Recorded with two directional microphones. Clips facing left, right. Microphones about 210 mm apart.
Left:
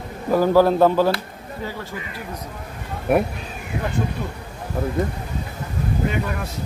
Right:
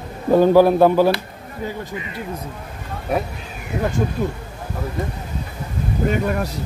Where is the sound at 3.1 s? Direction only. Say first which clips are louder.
Left 4 dB; 60° left (ahead or behind).